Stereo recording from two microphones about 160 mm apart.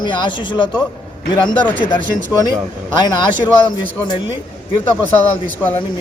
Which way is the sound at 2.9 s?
25° left (ahead or behind).